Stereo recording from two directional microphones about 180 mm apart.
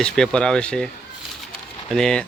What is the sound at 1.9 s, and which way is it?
Speech, 5° left (ahead or behind).